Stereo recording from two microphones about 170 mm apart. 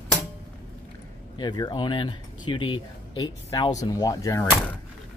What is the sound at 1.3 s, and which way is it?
Speech, 25° left (ahead or behind).